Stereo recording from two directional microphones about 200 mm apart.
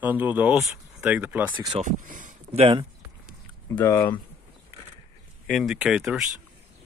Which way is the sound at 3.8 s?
15° left (ahead or behind).